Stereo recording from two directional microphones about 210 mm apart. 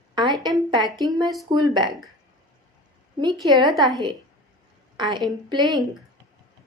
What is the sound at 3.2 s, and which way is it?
Speech, 20° right (ahead or behind).